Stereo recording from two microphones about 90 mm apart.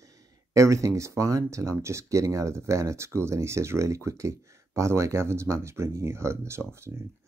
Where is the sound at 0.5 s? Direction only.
35° right (ahead or behind).